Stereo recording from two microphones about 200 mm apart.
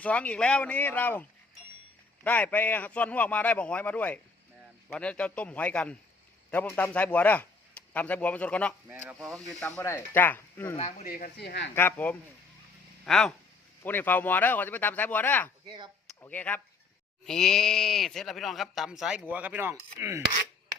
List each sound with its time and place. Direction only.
0.0 s a man's voice: 5° left (ahead or behind)
8.9 s a man's voice: 10° right (ahead or behind); by 10.8 s 10° left (ahead or behind)
10.8 s speech: 35° left (ahead or behind)
11.1 s speech: 50° left (ahead or behind)
11.7 s a man's voice: 10° left (ahead or behind)
15.6 s speech: 25° right (ahead or behind)
16.2 s a man's voice: 10° left (ahead or behind); by 20.2 s 15° right (ahead or behind)